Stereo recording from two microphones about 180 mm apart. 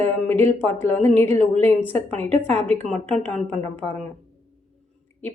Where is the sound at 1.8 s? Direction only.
10° left (ahead or behind).